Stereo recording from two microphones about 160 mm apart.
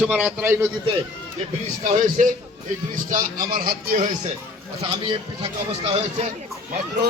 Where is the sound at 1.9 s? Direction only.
55° right (ahead or behind).